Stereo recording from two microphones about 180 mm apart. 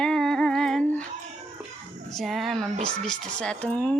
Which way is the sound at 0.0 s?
5° left (ahead or behind).